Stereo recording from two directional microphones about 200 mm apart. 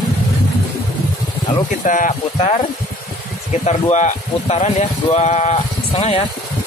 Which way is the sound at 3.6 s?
35° left (ahead or behind).